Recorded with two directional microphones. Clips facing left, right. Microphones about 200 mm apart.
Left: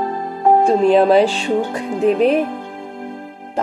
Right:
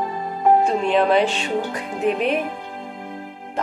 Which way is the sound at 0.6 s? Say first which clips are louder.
Left 6 dB; 35° left (ahead or behind).